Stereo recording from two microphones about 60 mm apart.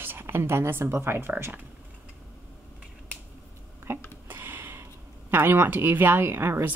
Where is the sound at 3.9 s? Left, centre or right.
Right.